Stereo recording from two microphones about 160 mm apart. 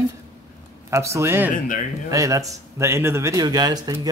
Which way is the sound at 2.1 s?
20° right (ahead or behind).